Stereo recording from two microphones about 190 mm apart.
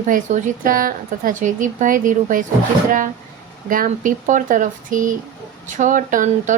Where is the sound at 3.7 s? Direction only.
45° right (ahead or behind).